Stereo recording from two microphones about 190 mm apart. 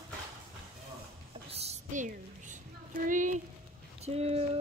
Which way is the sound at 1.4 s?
35° right (ahead or behind).